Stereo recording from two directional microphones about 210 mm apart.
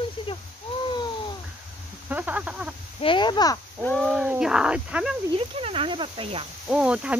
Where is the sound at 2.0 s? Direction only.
10° right (ahead or behind).